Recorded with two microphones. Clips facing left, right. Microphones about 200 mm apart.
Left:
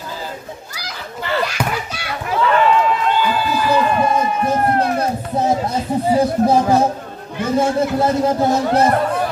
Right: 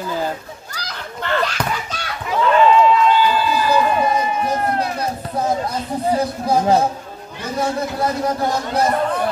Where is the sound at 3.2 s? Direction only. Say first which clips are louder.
Right 1 dB; 55° left (ahead or behind).